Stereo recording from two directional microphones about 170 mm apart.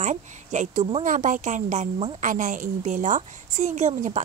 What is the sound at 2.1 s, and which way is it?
Speech, 50° right (ahead or behind).